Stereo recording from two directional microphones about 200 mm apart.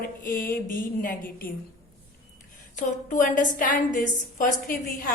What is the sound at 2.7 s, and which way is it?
A woman's voice, 40° left (ahead or behind).